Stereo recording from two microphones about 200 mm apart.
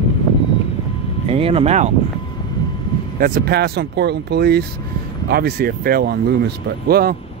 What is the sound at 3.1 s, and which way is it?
Speech, 45° right (ahead or behind).